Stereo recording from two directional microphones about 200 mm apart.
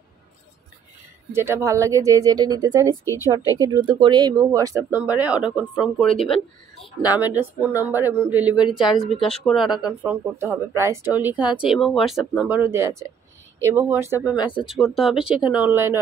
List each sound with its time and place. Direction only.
1.3 s speech: 10° right (ahead or behind)
14.3 s speech: 25° left (ahead or behind)
14.7 s speech: centre (ahead or behind)